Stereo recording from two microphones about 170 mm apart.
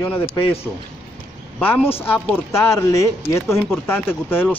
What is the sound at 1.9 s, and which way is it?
Speech, 10° left (ahead or behind).